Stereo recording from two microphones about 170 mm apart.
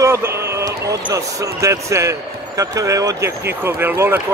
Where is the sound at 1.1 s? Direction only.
20° right (ahead or behind).